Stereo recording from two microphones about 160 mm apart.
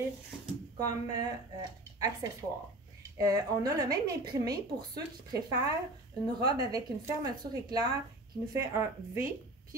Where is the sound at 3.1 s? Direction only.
20° right (ahead or behind).